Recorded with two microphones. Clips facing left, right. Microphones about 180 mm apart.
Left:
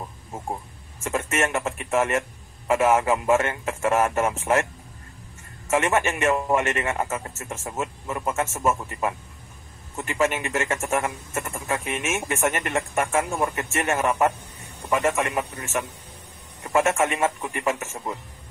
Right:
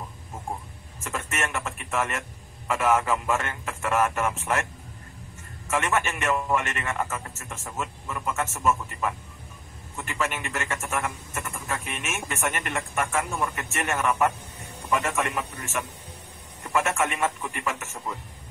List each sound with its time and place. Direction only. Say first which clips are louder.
1.0 s a man's voice: left 6 dB; 40° left (ahead or behind)
5.7 s a man's voice: left 4 dB; 40° left (ahead or behind)